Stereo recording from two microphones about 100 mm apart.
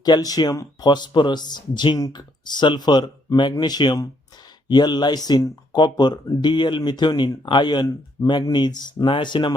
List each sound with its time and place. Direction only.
0.0 s speech: 40° left (ahead or behind)
8.2 s speech: 35° left (ahead or behind)
8.5 s speech: 45° left (ahead or behind)